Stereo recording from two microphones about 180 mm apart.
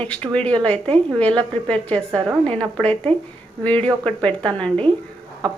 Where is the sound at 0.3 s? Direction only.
5° left (ahead or behind).